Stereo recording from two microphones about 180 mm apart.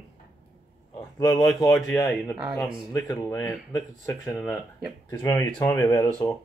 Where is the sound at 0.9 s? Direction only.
20° left (ahead or behind).